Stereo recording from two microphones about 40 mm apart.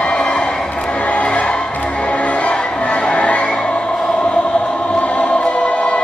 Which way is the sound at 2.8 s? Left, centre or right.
Left.